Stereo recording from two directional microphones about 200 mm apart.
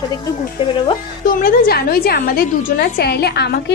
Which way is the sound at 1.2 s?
45° left (ahead or behind).